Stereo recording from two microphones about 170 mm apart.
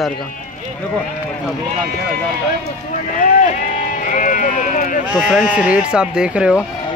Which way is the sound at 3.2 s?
50° left (ahead or behind).